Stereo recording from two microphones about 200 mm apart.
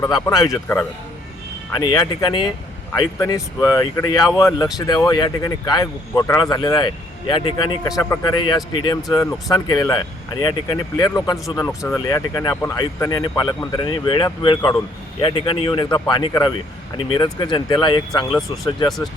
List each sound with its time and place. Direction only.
0.0 s speech: 15° left (ahead or behind)
18.3 s speech: centre (ahead or behind)